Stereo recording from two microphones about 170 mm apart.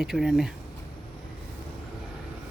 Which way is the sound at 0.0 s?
Centre (ahead or behind).